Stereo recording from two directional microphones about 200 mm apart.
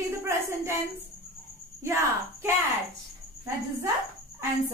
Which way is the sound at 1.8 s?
15° right (ahead or behind).